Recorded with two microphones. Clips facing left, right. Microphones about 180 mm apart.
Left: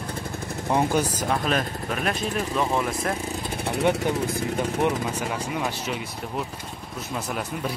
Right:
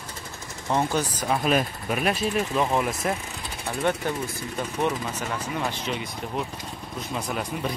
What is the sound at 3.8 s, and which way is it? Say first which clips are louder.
Speech: left 3 dB; 15° left (ahead or behind).